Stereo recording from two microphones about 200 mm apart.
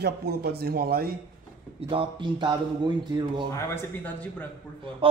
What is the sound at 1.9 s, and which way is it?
Speech, 25° right (ahead or behind).